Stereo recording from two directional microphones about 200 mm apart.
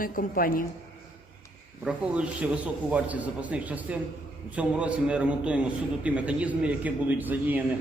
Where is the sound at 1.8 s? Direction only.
5° right (ahead or behind).